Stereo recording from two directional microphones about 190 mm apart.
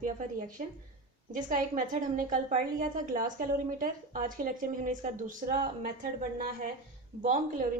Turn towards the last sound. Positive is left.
turn(degrees=-40)  # may be behind; listen again after turning